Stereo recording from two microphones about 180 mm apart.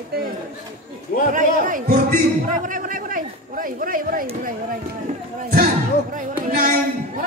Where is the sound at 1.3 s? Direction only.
50° right (ahead or behind).